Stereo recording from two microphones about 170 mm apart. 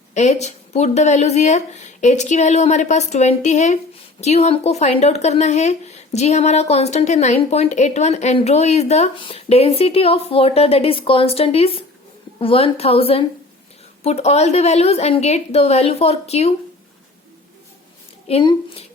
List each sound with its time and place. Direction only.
0.1 s speech: 40° left (ahead or behind)
18.3 s speech: 35° left (ahead or behind)